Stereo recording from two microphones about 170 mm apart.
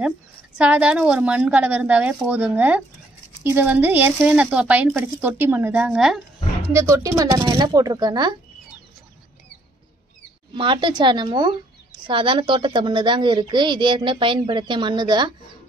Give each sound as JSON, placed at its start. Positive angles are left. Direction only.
{"t": 0.6, "sound": "speech", "side_deg": -5}
{"t": 6.7, "sound": "speech", "side_deg": -20}
{"t": 10.5, "sound": "speech", "side_deg": -30}